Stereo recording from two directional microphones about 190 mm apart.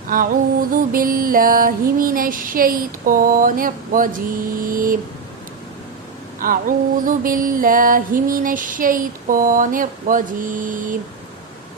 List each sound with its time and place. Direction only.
0.1 s music: 50° right (ahead or behind)
6.4 s music: 45° right (ahead or behind)